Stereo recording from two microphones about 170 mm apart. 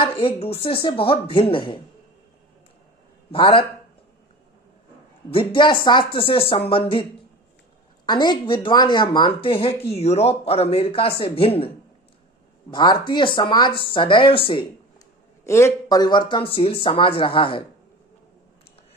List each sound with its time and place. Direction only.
0.0 s speech: 35° left (ahead or behind)
3.3 s speech: 30° left (ahead or behind)
5.3 s speech: 30° left (ahead or behind)
8.0 s speech: 25° left (ahead or behind)
12.7 s speech: 25° left (ahead or behind)
15.4 s speech: 15° left (ahead or behind); by 17.6 s 30° left (ahead or behind)